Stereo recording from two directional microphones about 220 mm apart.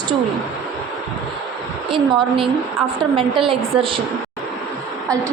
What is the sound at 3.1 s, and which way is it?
Speech, 25° right (ahead or behind).